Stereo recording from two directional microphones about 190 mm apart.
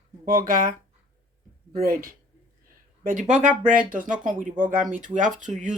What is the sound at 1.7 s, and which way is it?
Speech, 50° right (ahead or behind).